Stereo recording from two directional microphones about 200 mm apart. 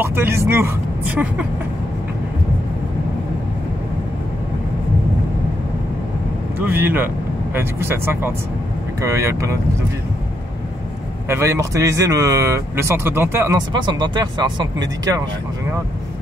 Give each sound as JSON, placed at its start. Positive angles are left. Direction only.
{"t": 0.0, "sound": "speech", "side_deg": -10}
{"t": 6.6, "sound": "speech", "side_deg": -10}
{"t": 11.2, "sound": "speech", "side_deg": -15}